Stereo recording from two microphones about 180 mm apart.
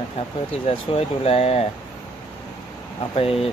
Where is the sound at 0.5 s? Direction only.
30° left (ahead or behind).